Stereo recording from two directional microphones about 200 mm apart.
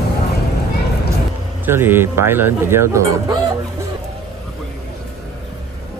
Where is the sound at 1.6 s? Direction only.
10° right (ahead or behind).